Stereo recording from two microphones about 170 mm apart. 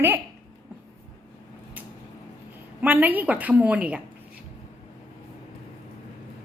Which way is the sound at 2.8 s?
10° right (ahead or behind).